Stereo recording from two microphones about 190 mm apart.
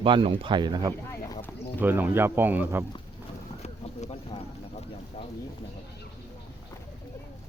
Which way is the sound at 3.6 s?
35° left (ahead or behind).